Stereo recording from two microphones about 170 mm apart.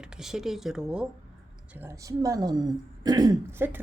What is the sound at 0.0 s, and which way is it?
A woman's voice, 5° right (ahead or behind).